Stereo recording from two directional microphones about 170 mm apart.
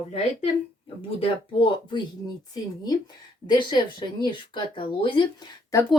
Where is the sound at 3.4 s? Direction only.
25° left (ahead or behind).